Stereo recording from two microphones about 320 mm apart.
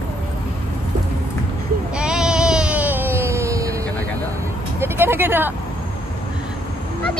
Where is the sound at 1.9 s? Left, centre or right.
Centre.